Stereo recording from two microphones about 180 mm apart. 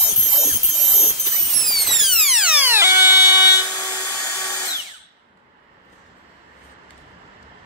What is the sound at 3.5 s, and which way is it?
Tools, 20° left (ahead or behind).